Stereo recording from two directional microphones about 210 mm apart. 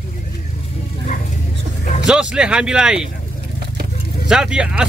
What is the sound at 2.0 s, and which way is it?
Speech, 5° right (ahead or behind).